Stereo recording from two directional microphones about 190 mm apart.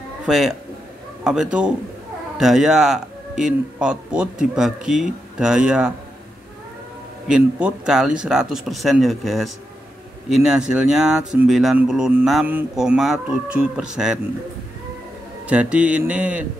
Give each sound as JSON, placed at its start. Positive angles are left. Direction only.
{"t": 0.3, "sound": "speech", "side_deg": 0}
{"t": 7.2, "sound": "speech", "side_deg": -5}
{"t": 15.4, "sound": "speech", "side_deg": -5}